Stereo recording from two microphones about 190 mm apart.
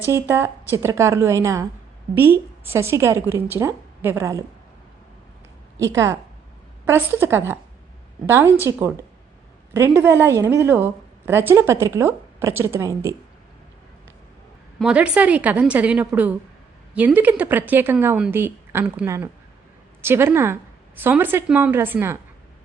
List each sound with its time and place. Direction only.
0.1 s a woman's voice: 15° right (ahead or behind)
5.8 s a woman's voice: 15° right (ahead or behind)
14.8 s a woman's voice: 5° right (ahead or behind)